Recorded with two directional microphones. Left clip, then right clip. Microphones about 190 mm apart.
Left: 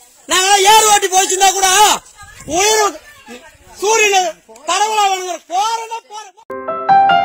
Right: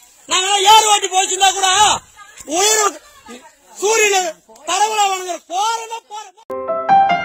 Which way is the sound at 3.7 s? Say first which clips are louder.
Left 2 dB; 10° right (ahead or behind).